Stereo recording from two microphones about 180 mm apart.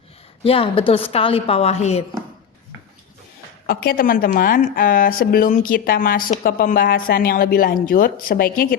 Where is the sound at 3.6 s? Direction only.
55° left (ahead or behind).